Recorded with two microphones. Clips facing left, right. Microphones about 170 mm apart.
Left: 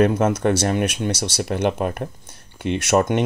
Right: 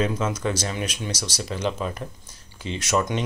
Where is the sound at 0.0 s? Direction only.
60° left (ahead or behind).